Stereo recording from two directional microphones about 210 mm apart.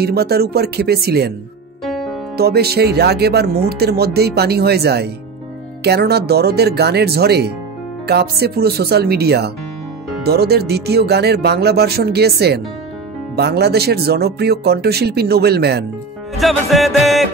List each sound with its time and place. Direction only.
0.0 s speech: 50° right (ahead or behind)
1.9 s music: centre (ahead or behind)
2.3 s speech: 50° right (ahead or behind)
16.3 s music: centre (ahead or behind)